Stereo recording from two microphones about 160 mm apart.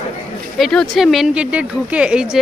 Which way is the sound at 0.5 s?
Centre (ahead or behind).